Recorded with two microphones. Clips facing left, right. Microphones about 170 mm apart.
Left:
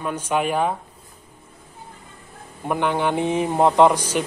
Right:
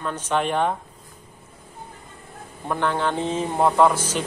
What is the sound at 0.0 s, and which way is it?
Speech, 10° left (ahead or behind).